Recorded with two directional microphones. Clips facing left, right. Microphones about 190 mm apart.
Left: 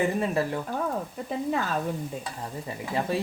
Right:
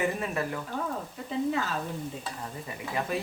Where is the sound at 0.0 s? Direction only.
30° left (ahead or behind).